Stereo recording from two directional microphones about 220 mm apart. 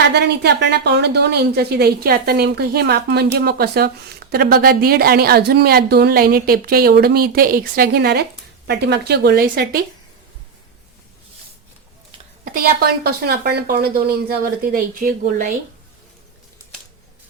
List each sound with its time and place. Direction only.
0.1 s a woman's voice: 50° right (ahead or behind)
12.5 s a woman's voice: 45° right (ahead or behind)